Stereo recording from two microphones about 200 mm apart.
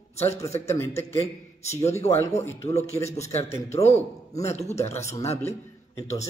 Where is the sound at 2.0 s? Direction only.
15° left (ahead or behind).